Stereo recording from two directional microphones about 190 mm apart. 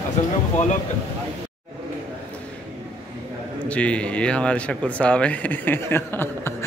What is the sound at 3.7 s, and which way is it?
Speech, 5° left (ahead or behind).